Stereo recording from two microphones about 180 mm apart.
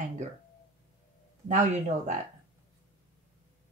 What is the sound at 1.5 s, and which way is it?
Speech, 40° right (ahead or behind).